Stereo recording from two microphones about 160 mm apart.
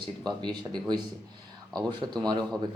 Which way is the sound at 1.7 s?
25° right (ahead or behind).